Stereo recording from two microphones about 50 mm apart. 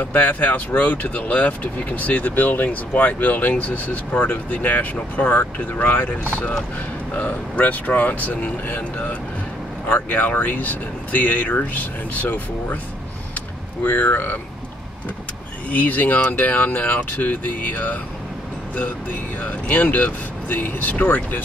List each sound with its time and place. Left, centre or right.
0.0 s speech: left
13.8 s speech: left
15.7 s speech: left
19.4 s speech: left